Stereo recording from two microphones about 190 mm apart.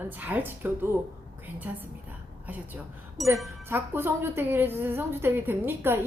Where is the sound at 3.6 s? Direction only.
10° right (ahead or behind).